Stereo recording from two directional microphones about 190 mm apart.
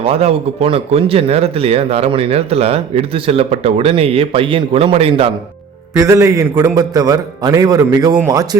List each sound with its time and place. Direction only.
0.0 s speech: 30° right (ahead or behind)
5.9 s a man's voice: 15° right (ahead or behind)